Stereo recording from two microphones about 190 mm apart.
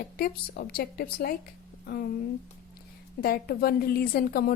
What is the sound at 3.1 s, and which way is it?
A woman's voice, 55° left (ahead or behind).